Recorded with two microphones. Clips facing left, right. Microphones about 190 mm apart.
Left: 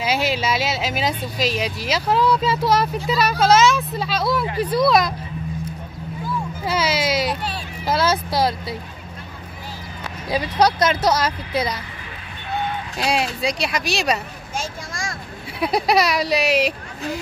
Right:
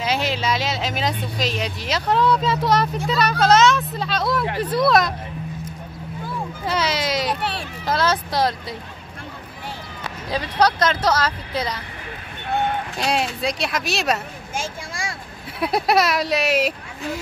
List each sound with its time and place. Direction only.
0.0 s speech: 5° left (ahead or behind)
6.6 s baby cry: 5° left (ahead or behind)
7.8 s speech: 5° left (ahead or behind)
10.3 s speech: 10° left (ahead or behind)
12.4 s a sound: 55° right (ahead or behind)
13.0 s speech: centre (ahead or behind)
15.6 s speech: centre (ahead or behind)